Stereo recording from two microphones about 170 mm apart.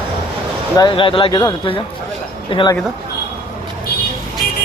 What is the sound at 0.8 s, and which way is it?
A man's voice, 30° left (ahead or behind).